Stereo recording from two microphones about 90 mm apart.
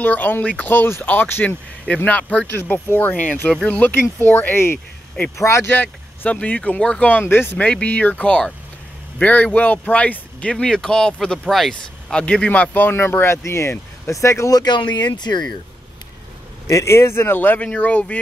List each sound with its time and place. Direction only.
0.0 s speech: 20° left (ahead or behind)
3.9 s speech: 25° left (ahead or behind)
5.8 s speech: 20° left (ahead or behind)
12.2 s speech: 15° left (ahead or behind); by 14.6 s 35° left (ahead or behind)
14.6 s speech: 55° left (ahead or behind)
16.6 s speech: 35° left (ahead or behind); by 18.2 s 15° left (ahead or behind)